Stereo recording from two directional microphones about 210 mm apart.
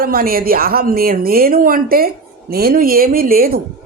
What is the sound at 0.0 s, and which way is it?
Speech, 45° right (ahead or behind).